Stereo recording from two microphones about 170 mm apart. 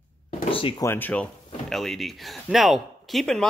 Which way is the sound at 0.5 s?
30° left (ahead or behind).